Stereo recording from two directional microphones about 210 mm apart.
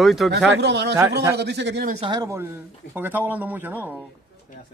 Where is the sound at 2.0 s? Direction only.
20° right (ahead or behind).